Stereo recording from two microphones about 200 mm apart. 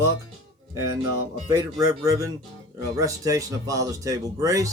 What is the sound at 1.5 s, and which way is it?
Speech, 15° right (ahead or behind).